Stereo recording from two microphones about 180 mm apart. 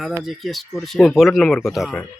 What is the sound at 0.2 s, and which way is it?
Speech, centre (ahead or behind).